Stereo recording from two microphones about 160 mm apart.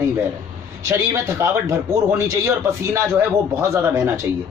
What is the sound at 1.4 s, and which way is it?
A man's voice, 20° right (ahead or behind).